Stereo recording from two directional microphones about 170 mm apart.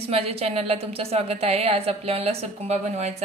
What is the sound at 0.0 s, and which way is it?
A woman's voice, 35° right (ahead or behind).